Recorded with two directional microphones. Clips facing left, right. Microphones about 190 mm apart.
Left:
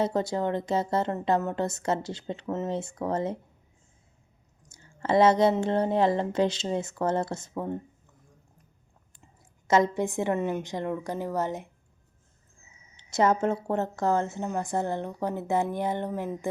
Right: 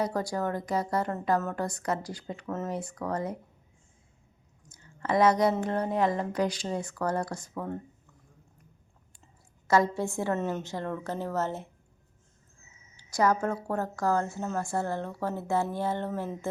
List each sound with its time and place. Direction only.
0.0 s a woman's voice: 25° left (ahead or behind)
4.7 s a woman's voice: 30° left (ahead or behind)
9.6 s a woman's voice: 20° left (ahead or behind)
13.0 s a woman's voice: 25° left (ahead or behind)